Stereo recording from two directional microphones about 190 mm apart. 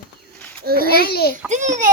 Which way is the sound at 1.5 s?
40° right (ahead or behind).